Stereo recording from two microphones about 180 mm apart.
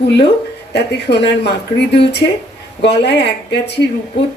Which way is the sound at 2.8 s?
70° left (ahead or behind).